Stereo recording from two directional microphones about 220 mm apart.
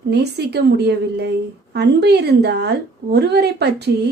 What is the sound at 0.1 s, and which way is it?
A woman's voice, 50° right (ahead or behind).